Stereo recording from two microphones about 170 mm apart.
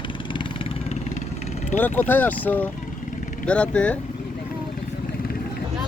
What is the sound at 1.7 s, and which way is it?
Speech, 10° left (ahead or behind).